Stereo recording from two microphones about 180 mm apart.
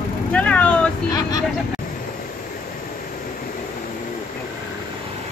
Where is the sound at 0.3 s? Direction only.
5° left (ahead or behind).